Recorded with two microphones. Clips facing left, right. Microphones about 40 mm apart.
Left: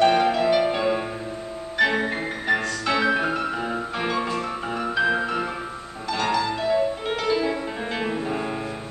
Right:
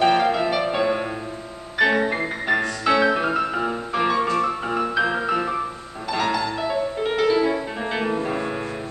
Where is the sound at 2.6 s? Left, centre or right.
Right.